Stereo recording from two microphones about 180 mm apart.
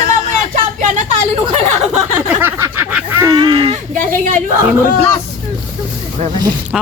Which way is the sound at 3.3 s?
30° right (ahead or behind).